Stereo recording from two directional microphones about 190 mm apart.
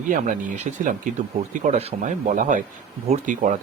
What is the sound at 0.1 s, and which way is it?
Speech, 40° right (ahead or behind).